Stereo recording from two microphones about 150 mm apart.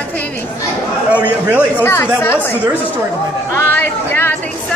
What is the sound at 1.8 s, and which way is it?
Speech, 15° left (ahead or behind).